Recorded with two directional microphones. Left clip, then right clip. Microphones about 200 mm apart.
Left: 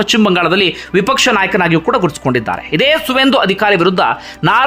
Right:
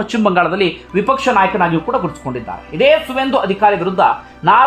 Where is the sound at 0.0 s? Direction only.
15° left (ahead or behind).